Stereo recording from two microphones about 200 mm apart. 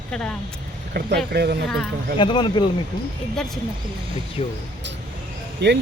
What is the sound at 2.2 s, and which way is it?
Speech, 25° left (ahead or behind).